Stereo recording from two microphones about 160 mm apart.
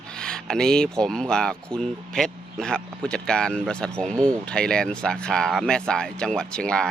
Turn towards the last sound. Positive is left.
turn(degrees=5)  # may be behind; listen again after turning